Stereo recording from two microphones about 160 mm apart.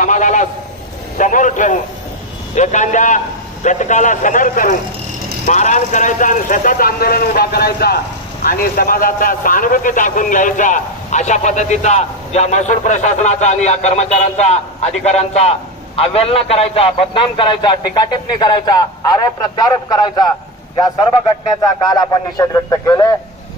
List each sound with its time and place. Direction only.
0.0 s a sound: 50° left (ahead or behind)
1.1 s a man's voice: 55° left (ahead or behind); by 8.0 s 75° left (ahead or behind)
8.5 s a man's voice: 65° left (ahead or behind); by 23.1 s 20° left (ahead or behind)